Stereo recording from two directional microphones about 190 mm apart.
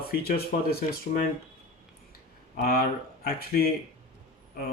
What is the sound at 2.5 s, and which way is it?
Speech, 55° left (ahead or behind).